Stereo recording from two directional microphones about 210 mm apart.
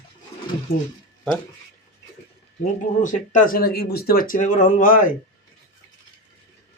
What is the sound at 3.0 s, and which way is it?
Speech, 35° left (ahead or behind).